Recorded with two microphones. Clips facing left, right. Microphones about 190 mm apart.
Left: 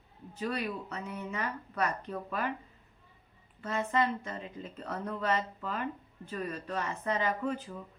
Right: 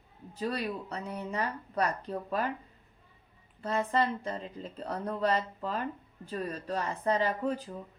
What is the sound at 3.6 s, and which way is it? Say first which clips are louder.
Speech: right 1 dB; 35° right (ahead or behind).